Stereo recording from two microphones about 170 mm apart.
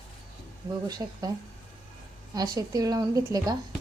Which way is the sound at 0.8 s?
20° right (ahead or behind).